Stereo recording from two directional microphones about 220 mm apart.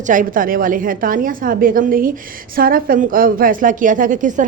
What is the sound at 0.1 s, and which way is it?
A woman's voice, 40° right (ahead or behind).